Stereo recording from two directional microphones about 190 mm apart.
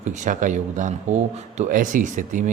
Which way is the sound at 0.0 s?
40° right (ahead or behind).